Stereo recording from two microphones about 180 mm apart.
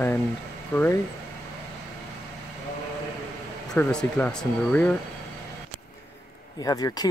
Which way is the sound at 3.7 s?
5° left (ahead or behind).